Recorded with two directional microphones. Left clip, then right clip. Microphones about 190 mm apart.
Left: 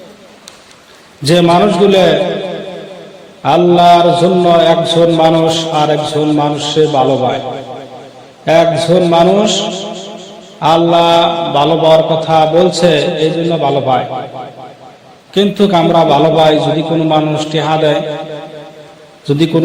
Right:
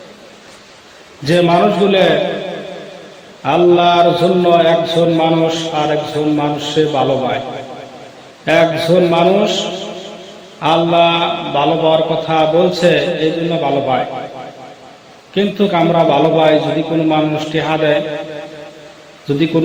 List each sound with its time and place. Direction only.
1.2 s a man's voice: 40° left (ahead or behind)
3.4 s a man's voice: 35° left (ahead or behind)